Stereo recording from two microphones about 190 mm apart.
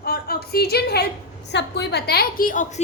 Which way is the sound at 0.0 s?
55° left (ahead or behind).